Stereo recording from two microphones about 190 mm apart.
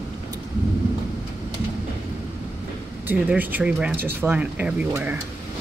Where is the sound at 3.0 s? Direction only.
10° right (ahead or behind).